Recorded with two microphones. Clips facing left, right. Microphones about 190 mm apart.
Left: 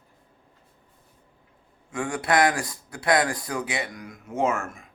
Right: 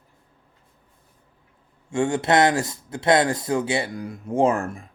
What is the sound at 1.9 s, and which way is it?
Speech, 25° right (ahead or behind).